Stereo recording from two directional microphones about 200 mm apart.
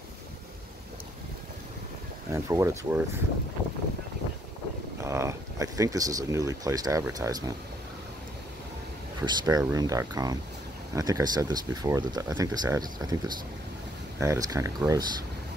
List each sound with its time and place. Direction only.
2.3 s speech: 15° right (ahead or behind)
5.0 s speech: 15° right (ahead or behind)
9.2 s speech: 20° right (ahead or behind)
14.2 s speech: 15° right (ahead or behind)